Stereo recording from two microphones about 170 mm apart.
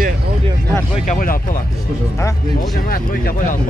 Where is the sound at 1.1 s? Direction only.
55° left (ahead or behind).